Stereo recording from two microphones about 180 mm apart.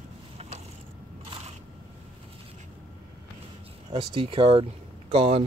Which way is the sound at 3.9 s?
30° right (ahead or behind).